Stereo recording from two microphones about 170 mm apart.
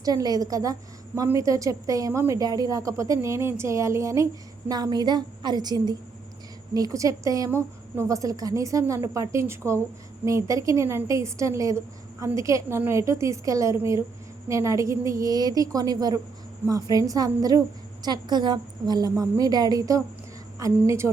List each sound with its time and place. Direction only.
0.0 s a woman's voice: 20° right (ahead or behind)